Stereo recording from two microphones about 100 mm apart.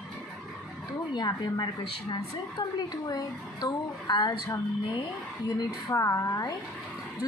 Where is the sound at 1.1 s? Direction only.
45° left (ahead or behind).